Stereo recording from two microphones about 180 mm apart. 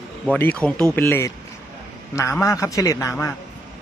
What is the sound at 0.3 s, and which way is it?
A man's voice, 10° left (ahead or behind).